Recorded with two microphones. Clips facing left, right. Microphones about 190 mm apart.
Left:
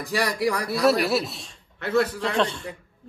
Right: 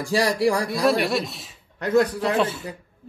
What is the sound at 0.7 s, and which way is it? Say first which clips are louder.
A man's voice: even; centre (ahead or behind).